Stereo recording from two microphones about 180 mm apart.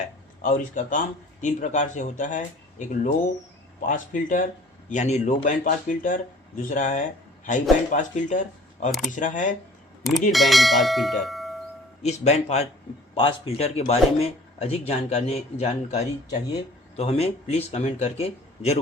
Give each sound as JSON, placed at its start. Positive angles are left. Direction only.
{"t": 0.4, "sound": "speech", "side_deg": 45}
{"t": 10.3, "sound": "speech", "side_deg": 0}
{"t": 12.0, "sound": "speech", "side_deg": 40}